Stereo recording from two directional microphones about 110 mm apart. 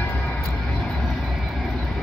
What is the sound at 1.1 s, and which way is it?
Vehicle, centre (ahead or behind).